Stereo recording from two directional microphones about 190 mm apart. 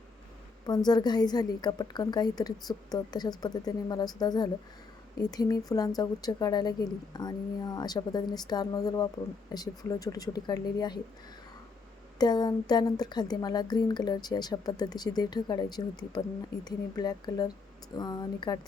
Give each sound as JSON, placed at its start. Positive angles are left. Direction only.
{"t": 0.7, "sound": "speech", "side_deg": 20}
{"t": 12.2, "sound": "speech", "side_deg": 20}